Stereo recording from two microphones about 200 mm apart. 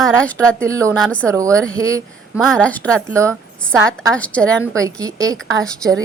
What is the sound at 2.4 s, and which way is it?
Speech, 5° left (ahead or behind).